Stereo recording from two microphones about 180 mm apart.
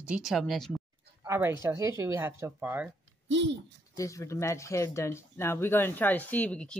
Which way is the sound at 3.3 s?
90° right.